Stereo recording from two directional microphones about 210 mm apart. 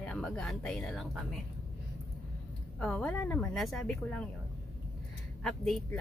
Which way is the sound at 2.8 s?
5° left (ahead or behind).